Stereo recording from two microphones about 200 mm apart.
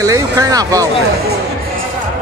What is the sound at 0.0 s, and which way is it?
Speech, 15° right (ahead or behind).